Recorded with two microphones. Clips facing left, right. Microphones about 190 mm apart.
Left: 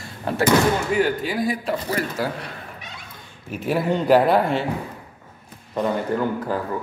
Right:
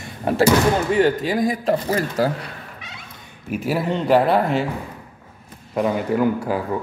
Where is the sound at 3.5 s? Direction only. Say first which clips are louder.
Even; 5° right (ahead or behind).